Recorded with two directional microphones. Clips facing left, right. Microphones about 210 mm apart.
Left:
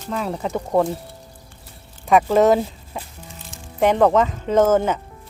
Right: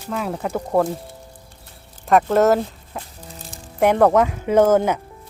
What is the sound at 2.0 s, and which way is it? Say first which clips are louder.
Speech: even; centre (ahead or behind).